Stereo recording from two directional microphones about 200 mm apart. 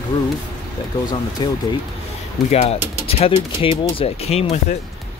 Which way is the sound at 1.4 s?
20° left (ahead or behind).